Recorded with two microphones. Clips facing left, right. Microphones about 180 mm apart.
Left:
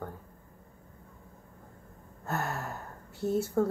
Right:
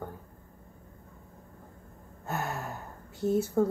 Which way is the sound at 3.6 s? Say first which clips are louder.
Right 1 dB; 10° right (ahead or behind).